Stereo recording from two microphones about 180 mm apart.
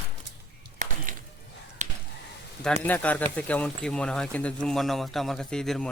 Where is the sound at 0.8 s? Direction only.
50° right (ahead or behind).